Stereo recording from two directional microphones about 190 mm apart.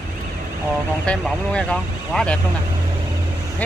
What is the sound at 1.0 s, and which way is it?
Speech, 5° left (ahead or behind).